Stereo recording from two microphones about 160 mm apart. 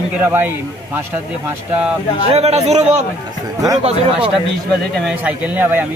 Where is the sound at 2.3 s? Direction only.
40° right (ahead or behind).